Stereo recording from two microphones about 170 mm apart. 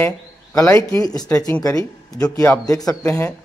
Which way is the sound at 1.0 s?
25° left (ahead or behind).